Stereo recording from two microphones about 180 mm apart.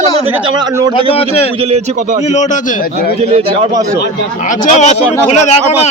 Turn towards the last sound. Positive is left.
turn(degrees=40)  # may be behind; listen again after turning